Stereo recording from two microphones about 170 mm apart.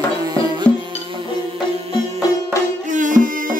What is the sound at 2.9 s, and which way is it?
Music, 50° right (ahead or behind).